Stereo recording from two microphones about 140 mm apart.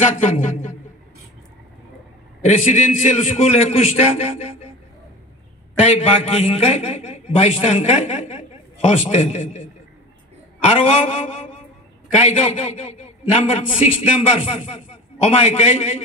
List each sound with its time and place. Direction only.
0.0 s a man's voice: 60° left (ahead or behind)
2.4 s a man's voice: 55° left (ahead or behind)
5.8 s a man's voice: 50° left (ahead or behind)
10.6 s a man's voice: 55° left (ahead or behind)